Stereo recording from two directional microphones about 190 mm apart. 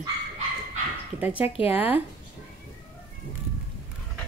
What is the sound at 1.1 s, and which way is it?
Speech, 10° right (ahead or behind).